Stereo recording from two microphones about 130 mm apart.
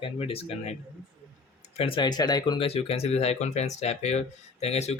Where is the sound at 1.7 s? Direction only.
45° left (ahead or behind).